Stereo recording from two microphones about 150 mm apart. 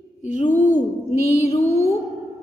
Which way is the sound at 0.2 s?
50° left (ahead or behind).